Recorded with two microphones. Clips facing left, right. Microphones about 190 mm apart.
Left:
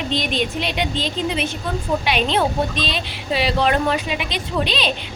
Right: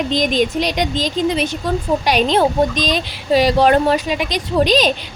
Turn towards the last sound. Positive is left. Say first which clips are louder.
# right 8 dB
turn(degrees=-40)  # may be behind; listen again after turning